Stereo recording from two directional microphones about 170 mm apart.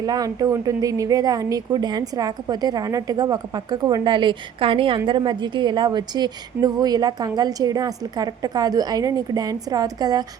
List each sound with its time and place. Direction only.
0.0 s speech: 20° right (ahead or behind)